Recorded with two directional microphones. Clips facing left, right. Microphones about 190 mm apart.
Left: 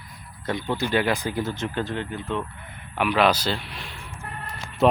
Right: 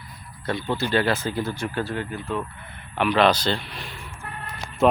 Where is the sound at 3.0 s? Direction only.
10° left (ahead or behind).